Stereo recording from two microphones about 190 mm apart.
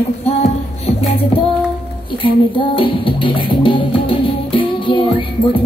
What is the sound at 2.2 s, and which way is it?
Music, 25° left (ahead or behind).